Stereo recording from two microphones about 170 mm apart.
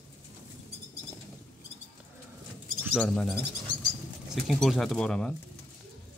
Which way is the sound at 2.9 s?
5° left (ahead or behind).